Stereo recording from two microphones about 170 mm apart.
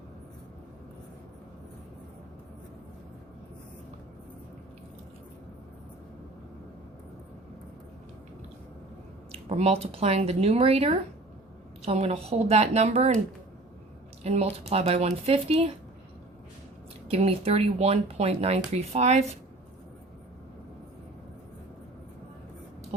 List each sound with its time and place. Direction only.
9.3 s speech: 35° right (ahead or behind)
14.3 s speech: 40° right (ahead or behind)
17.1 s speech: 35° right (ahead or behind)